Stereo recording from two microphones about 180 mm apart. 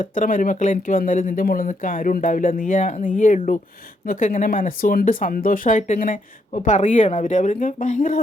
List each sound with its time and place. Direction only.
0.0 s speech: 45° left (ahead or behind)